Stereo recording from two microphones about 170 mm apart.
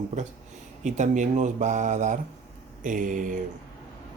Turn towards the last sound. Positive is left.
turn(degrees=-50)  # may be behind; listen again after turning